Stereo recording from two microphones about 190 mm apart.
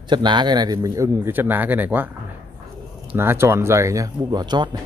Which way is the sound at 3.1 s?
10° right (ahead or behind).